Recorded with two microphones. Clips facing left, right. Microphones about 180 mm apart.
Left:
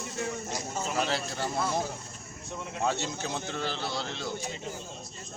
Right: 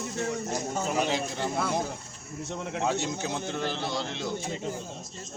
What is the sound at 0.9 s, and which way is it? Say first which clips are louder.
Speech: even; 15° right (ahead or behind).